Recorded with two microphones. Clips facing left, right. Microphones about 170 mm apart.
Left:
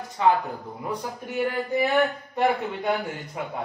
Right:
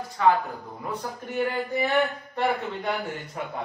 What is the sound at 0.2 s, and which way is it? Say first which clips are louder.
Speech: even; 20° left (ahead or behind).